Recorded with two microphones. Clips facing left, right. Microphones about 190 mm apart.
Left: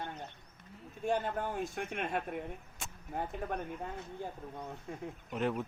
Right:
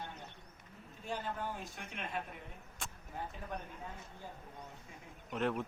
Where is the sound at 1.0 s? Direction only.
55° left (ahead or behind).